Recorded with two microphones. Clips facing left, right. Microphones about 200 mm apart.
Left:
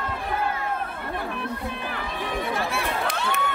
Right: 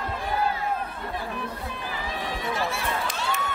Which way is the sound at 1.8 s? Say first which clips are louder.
Right 1 dB; 60° left (ahead or behind).